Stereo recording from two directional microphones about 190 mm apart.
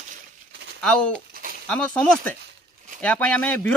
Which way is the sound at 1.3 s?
50° right (ahead or behind).